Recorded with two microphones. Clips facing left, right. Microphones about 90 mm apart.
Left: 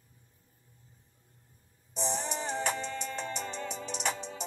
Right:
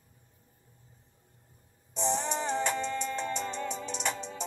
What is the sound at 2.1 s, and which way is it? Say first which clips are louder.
Music: right 5 dB; 40° right (ahead or behind).